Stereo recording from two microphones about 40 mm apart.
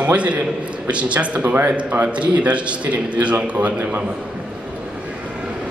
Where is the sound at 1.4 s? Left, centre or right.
Right.